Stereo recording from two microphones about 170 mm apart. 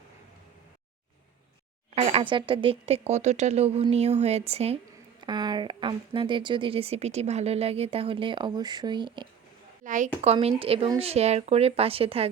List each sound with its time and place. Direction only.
2.0 s speech: 40° right (ahead or behind)
5.2 s speech: 25° right (ahead or behind)
9.8 s a woman's voice: 50° right (ahead or behind)
10.2 s speech: 35° right (ahead or behind)